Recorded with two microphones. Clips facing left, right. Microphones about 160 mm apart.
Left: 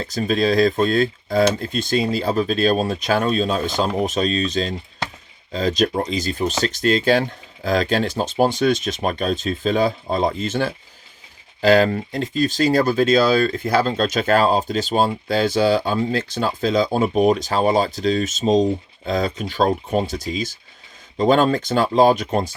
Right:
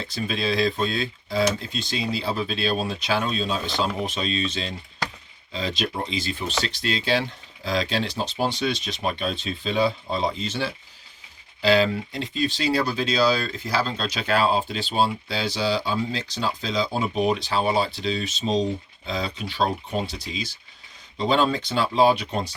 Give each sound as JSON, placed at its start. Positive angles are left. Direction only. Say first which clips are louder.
{"t": 0.0, "sound": "speech", "louder": "left 8 dB", "side_deg": 45}